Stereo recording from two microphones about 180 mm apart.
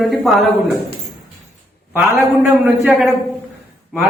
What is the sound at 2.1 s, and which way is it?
Speech, 15° right (ahead or behind).